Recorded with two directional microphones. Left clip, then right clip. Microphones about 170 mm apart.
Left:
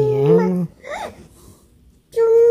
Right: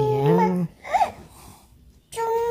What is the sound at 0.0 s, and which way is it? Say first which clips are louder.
Babbling: left 6 dB; 10° left (ahead or behind).